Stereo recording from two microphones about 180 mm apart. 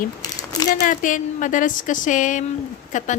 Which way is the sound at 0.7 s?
45° left (ahead or behind).